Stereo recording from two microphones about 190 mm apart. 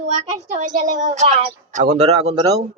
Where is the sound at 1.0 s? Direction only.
40° right (ahead or behind).